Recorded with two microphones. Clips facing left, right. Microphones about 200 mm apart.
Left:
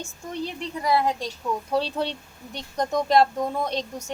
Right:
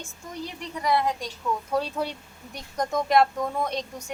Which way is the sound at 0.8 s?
30° left (ahead or behind).